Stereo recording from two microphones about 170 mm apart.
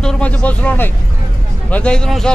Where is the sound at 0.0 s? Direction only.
5° left (ahead or behind).